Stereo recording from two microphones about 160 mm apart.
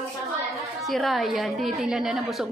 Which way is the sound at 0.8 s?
Centre (ahead or behind).